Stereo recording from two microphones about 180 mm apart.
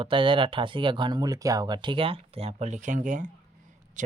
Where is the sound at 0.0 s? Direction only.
30° right (ahead or behind).